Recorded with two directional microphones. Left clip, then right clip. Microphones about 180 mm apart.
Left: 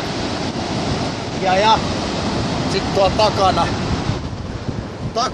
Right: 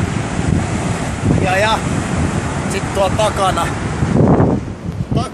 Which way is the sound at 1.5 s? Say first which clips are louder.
Left 3 dB; 10° right (ahead or behind).